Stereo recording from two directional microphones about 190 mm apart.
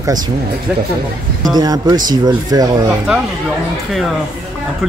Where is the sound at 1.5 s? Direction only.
20° right (ahead or behind).